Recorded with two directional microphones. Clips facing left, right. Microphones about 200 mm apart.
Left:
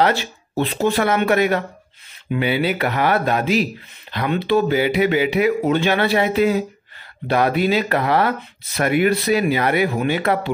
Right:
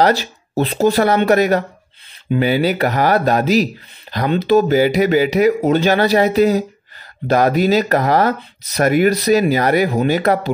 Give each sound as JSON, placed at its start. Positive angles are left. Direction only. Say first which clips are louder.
{"t": 0.0, "sound": "speech", "louder": "right 3 dB", "side_deg": -40}